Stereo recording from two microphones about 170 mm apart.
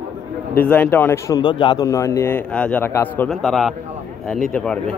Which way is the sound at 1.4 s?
30° left (ahead or behind).